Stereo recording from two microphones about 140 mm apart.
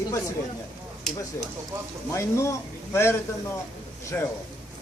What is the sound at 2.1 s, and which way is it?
A man's voice, 20° left (ahead or behind).